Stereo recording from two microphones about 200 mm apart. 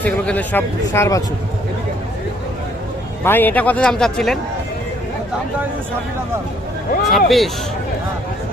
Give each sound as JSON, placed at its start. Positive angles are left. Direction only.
{"t": 0.0, "sound": "speech", "side_deg": 10}
{"t": 3.2, "sound": "speech", "side_deg": 10}
{"t": 7.1, "sound": "speech", "side_deg": 0}